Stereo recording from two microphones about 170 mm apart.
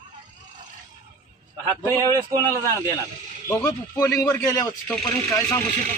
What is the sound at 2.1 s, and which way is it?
Speech, 20° right (ahead or behind).